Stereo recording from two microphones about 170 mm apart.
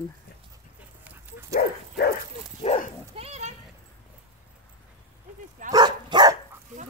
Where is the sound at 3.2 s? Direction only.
40° right (ahead or behind).